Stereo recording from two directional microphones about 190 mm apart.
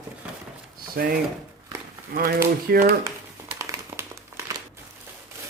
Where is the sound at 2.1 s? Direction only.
50° right (ahead or behind).